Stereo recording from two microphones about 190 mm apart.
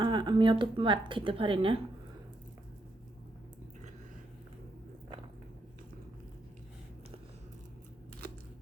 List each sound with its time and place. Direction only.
0.0 s a woman's voice: 25° right (ahead or behind)